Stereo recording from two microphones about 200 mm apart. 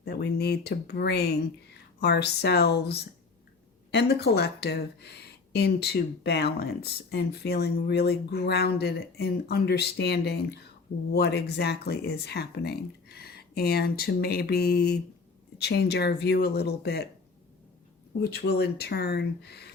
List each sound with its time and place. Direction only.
0.0 s speech: 55° left (ahead or behind)
18.2 s speech: 55° left (ahead or behind)